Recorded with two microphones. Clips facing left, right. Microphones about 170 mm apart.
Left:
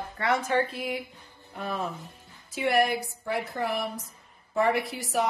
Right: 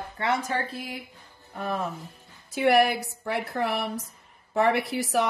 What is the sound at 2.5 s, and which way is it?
A woman's voice, 70° right (ahead or behind).